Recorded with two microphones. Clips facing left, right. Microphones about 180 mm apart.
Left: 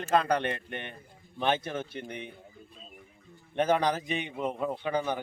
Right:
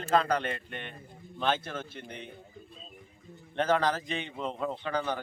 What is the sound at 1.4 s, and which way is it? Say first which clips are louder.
Speech: left 2 dB; 15° left (ahead or behind).